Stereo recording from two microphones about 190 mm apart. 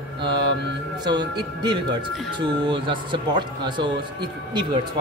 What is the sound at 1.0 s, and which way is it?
Speech, 20° right (ahead or behind).